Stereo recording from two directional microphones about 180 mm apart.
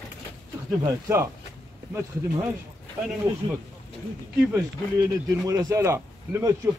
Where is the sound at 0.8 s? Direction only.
15° right (ahead or behind).